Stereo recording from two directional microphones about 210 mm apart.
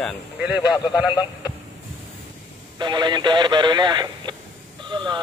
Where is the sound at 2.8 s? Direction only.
20° right (ahead or behind).